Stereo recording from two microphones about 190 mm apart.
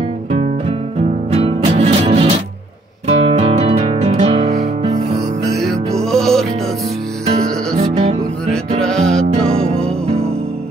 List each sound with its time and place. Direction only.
0.3 s music: 30° right (ahead or behind)
5.6 s music: centre (ahead or behind)
7.8 s music: 35° right (ahead or behind)
8.5 s music: 5° left (ahead or behind)